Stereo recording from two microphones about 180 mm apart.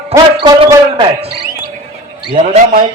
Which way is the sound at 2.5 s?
45° right (ahead or behind).